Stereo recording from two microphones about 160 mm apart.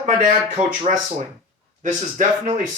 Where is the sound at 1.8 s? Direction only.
55° right (ahead or behind).